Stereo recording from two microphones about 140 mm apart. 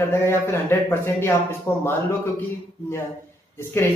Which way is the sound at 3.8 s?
20° left (ahead or behind).